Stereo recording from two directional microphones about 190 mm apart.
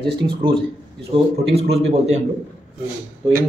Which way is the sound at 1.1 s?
30° right (ahead or behind).